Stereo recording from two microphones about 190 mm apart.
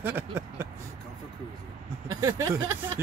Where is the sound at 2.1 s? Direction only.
20° right (ahead or behind).